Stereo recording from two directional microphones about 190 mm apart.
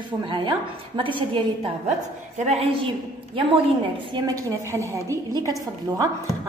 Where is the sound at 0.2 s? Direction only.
25° right (ahead or behind).